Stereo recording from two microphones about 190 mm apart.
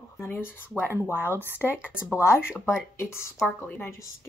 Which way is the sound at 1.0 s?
10° left (ahead or behind).